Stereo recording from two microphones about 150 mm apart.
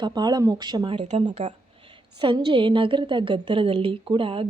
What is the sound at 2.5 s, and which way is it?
A woman's voice, 35° right (ahead or behind).